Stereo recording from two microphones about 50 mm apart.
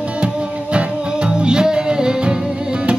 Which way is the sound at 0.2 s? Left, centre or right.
Right.